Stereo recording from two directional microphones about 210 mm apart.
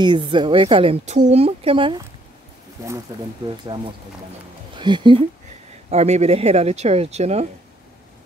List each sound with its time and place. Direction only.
0.0 s speech: 25° right (ahead or behind)